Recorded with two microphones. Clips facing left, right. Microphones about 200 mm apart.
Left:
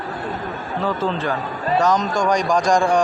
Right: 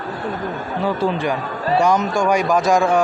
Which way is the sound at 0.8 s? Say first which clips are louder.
Right 2 dB; 15° right (ahead or behind).